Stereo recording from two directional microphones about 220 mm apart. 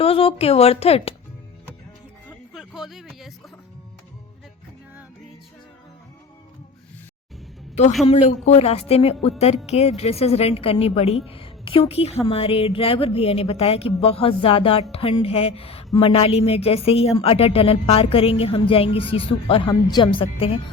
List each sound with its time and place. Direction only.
0.0 s speech: 25° left (ahead or behind)
2.5 s speech: centre (ahead or behind)
8.0 s speech: 30° left (ahead or behind)